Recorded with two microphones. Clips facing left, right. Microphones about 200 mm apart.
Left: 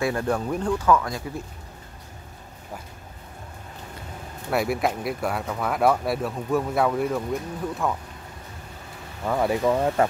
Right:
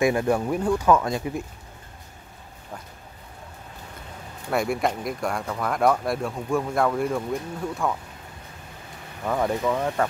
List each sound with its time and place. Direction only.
0.0 s speech: 10° right (ahead or behind)
0.8 s speech: 20° right (ahead or behind)
4.5 s speech: 5° left (ahead or behind)
9.2 s speech: 5° left (ahead or behind)
9.7 s speech: 20° left (ahead or behind)